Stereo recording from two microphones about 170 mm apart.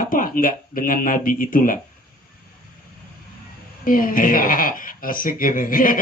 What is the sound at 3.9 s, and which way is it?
A woman's voice, 55° left (ahead or behind).